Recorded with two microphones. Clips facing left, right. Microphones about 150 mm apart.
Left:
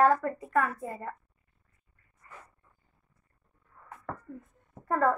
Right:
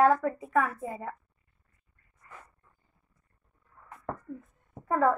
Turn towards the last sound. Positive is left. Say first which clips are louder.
# right 1 dB
turn(degrees=0)  # may be behind; listen again after turning